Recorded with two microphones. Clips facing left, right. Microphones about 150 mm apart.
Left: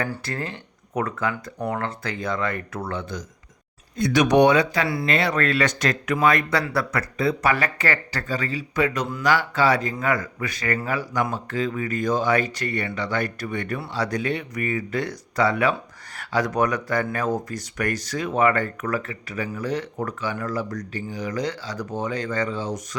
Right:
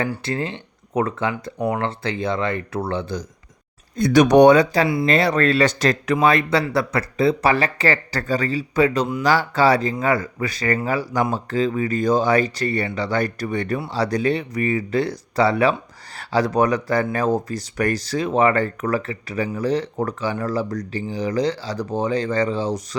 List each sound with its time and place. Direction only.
0.2 s speech: 20° right (ahead or behind)
3.9 s speech: 45° right (ahead or behind)